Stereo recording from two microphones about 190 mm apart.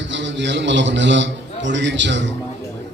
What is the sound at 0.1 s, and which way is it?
A man's voice, 70° right (ahead or behind).